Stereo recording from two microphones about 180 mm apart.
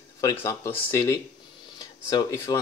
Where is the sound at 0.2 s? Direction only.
15° left (ahead or behind).